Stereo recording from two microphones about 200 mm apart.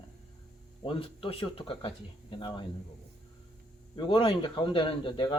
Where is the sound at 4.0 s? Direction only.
25° left (ahead or behind).